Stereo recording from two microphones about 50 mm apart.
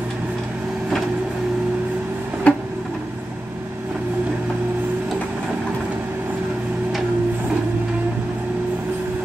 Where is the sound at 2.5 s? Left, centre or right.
Left.